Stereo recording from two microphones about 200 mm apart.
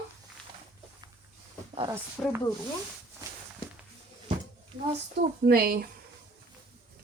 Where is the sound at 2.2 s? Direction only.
10° left (ahead or behind).